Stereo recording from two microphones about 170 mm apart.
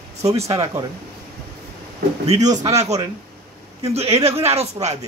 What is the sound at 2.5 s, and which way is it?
Speech, 20° right (ahead or behind).